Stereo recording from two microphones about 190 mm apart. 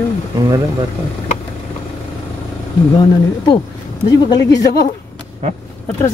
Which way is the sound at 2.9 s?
25° left (ahead or behind).